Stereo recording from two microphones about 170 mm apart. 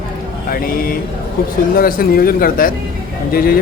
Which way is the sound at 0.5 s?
60° left (ahead or behind).